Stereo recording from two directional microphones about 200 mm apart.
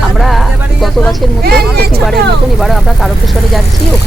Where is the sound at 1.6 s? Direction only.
50° right (ahead or behind).